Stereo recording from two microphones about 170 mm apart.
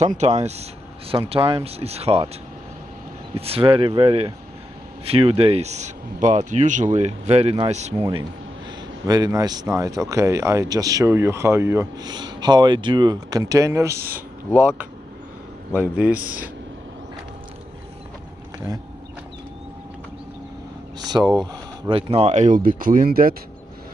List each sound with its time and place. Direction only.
0.0 s speech: 40° right (ahead or behind)
3.3 s speech: 35° right (ahead or behind)
9.0 s speech: 20° right (ahead or behind)
15.7 s a man's voice: 10° right (ahead or behind)
21.1 s a man's voice: 15° right (ahead or behind)
21.8 s speech: 35° right (ahead or behind); by 23.3 s 55° right (ahead or behind)